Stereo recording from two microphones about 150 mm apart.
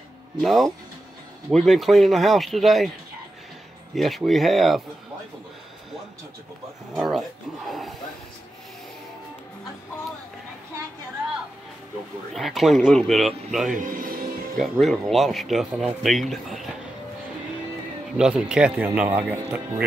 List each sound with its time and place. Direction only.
0.4 s speech: centre (ahead or behind)
3.9 s speech: centre (ahead or behind)
6.9 s speech: centre (ahead or behind)
12.4 s speech: centre (ahead or behind)
13.7 s speech: 70° right (ahead or behind)
14.6 s speech: centre (ahead or behind)
18.1 s speech: 5° right (ahead or behind)